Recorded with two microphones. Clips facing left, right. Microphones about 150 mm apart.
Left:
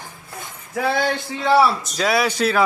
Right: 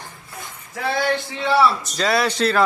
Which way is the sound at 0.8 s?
65° left (ahead or behind).